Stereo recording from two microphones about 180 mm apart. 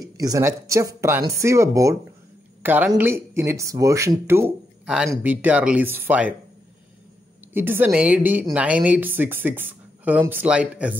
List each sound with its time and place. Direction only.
0.0 s a woman's voice: 20° right (ahead or behind)
7.5 s a woman's voice: 10° right (ahead or behind)